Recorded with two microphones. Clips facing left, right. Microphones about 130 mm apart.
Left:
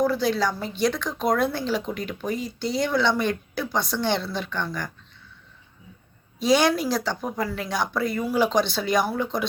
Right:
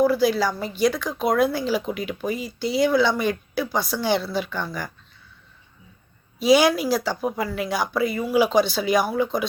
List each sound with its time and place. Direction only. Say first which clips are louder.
0.0 s speech: right 3 dB; 5° right (ahead or behind)
6.4 s speech: right 3 dB; 5° right (ahead or behind)